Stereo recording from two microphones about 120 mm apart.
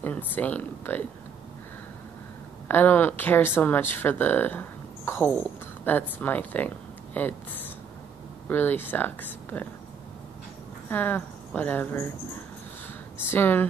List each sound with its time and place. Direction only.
0.0 s speech: 15° left (ahead or behind)
2.7 s speech: 15° left (ahead or behind)
10.9 s speech: 15° left (ahead or behind)
13.3 s speech: 15° left (ahead or behind)